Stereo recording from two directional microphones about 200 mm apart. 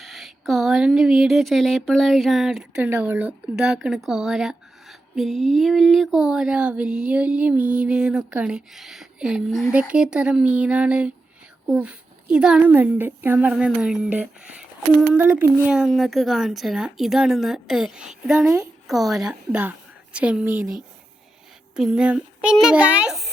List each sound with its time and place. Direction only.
0.0 s speech: centre (ahead or behind)
18.4 s a woman's voice: 15° right (ahead or behind)
18.9 s speech: centre (ahead or behind)